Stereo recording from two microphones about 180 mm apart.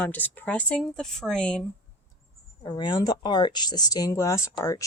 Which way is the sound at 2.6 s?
25° left (ahead or behind).